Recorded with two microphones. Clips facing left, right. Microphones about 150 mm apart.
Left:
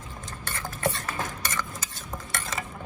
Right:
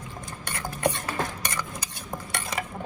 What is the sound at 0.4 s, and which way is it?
Cutlery, 20° right (ahead or behind).